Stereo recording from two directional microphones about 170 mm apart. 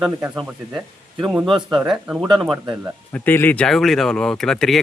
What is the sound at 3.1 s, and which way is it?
Speech, 10° left (ahead or behind).